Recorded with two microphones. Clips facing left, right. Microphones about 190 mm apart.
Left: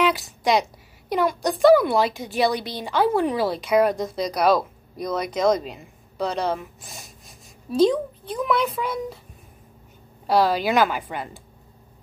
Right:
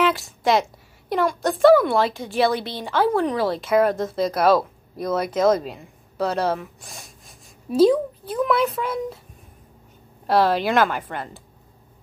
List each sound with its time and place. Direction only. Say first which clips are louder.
0.0 s a woman's voice: right 1 dB; centre (ahead or behind)
10.2 s speech: right 1 dB; centre (ahead or behind)